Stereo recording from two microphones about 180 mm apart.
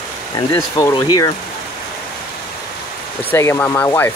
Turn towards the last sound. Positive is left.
turn(degrees=15)  # may be behind; listen again after turning